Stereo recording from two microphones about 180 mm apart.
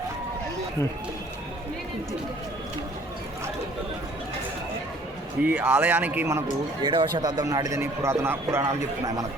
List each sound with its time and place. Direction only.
5.4 s speech: 10° right (ahead or behind)
6.8 s speech: 25° right (ahead or behind)